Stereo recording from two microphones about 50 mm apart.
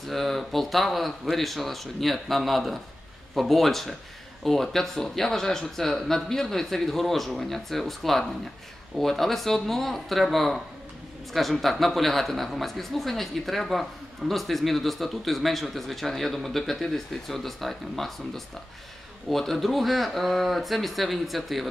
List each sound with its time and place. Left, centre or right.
0.0 s speech: centre